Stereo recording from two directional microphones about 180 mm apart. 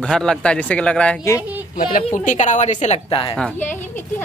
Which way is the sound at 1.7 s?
50° left (ahead or behind).